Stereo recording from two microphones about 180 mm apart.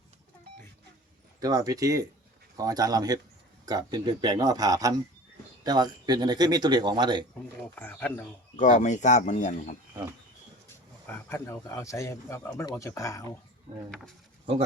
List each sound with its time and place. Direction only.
1.4 s speech: 20° right (ahead or behind)
7.8 s speech: 10° left (ahead or behind)
8.5 s speech: 45° left (ahead or behind)
11.0 s speech: 15° left (ahead or behind)